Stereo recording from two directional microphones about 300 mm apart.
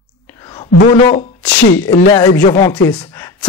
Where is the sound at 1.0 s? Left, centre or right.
Left.